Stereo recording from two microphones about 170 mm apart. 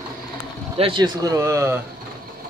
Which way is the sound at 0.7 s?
30° right (ahead or behind).